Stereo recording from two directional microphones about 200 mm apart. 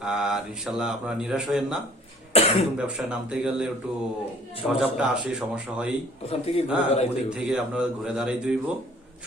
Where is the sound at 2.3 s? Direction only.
30° left (ahead or behind).